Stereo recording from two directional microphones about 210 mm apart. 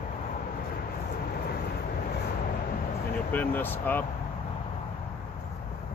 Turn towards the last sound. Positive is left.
turn(degrees=10)  # may be behind; listen again after turning